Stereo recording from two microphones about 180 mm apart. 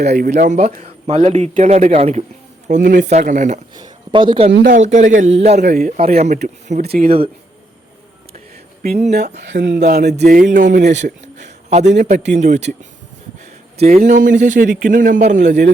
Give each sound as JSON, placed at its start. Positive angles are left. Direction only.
{"t": 0.3, "sound": "speech", "side_deg": -45}
{"t": 2.6, "sound": "a man's voice", "side_deg": -45}
{"t": 3.8, "sound": "speech", "side_deg": -25}
{"t": 4.6, "sound": "speech", "side_deg": -45}
{"t": 5.6, "sound": "a man's voice", "side_deg": -50}
{"t": 6.0, "sound": "speech", "side_deg": -35}
{"t": 6.8, "sound": "speech", "side_deg": -60}
{"t": 9.0, "sound": "speech", "side_deg": -40}
{"t": 9.3, "sound": "speech", "side_deg": -70}
{"t": 10.2, "sound": "a man's voice", "side_deg": -50}
{"t": 13.7, "sound": "a man's voice", "side_deg": -35}